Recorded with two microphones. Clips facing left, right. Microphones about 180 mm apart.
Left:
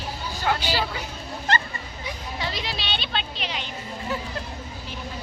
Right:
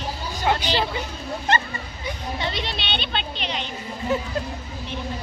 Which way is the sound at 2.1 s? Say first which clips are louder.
Right 3 dB; centre (ahead or behind).